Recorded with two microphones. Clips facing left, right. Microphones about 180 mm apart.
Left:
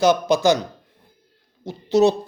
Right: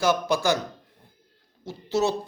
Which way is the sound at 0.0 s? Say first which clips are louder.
Left 6 dB; 20° left (ahead or behind).